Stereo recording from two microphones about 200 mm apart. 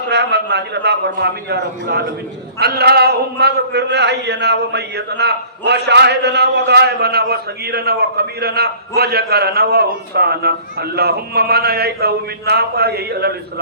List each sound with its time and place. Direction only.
0.1 s a man's voice: 60° right (ahead or behind)